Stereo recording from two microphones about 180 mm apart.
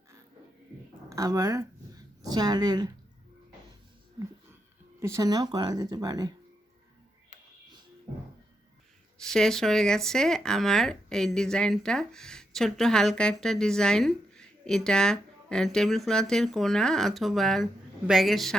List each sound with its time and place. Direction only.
1.1 s speech: 15° right (ahead or behind)
4.9 s speech: 15° right (ahead or behind)
9.3 s speech: 5° left (ahead or behind)